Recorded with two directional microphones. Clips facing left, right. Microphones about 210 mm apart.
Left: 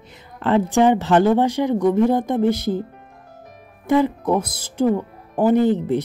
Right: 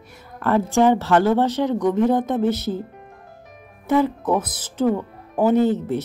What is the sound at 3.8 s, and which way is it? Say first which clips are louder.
Speech: left 1 dB; 15° left (ahead or behind).